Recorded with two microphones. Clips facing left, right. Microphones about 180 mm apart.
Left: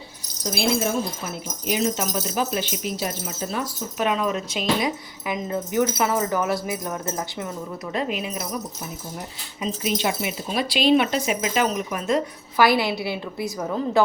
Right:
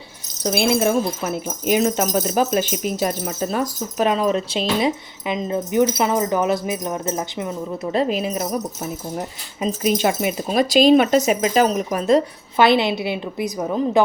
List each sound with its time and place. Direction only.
0.4 s speech: 60° right (ahead or behind); by 7.5 s 20° right (ahead or behind)
7.9 s speech: 35° right (ahead or behind)
12.5 s a woman's voice: 25° right (ahead or behind)